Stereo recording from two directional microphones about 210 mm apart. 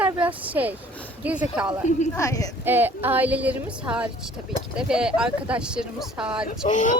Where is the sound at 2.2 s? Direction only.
15° left (ahead or behind).